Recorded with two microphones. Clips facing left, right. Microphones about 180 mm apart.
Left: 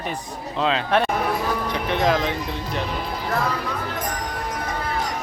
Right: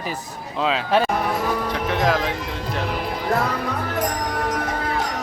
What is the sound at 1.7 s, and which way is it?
Music, centre (ahead or behind).